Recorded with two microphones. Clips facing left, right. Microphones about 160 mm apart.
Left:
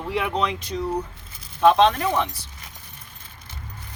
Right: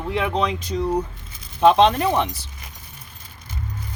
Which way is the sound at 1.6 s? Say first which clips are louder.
Right 2 dB; 25° right (ahead or behind).